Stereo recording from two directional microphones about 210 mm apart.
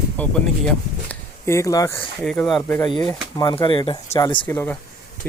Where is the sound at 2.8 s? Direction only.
20° left (ahead or behind).